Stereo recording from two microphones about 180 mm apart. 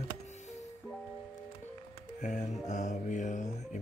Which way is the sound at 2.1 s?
45° left (ahead or behind).